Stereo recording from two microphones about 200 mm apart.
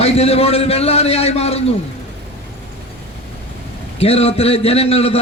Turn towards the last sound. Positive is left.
turn(degrees=30)  # may be behind; listen again after turning